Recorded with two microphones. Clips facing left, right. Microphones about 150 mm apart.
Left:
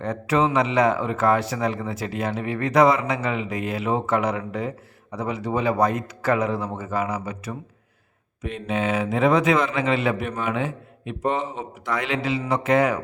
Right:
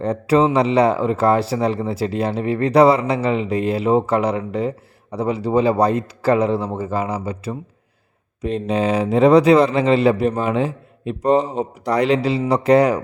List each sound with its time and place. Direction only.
0.0 s a man's voice: 35° right (ahead or behind)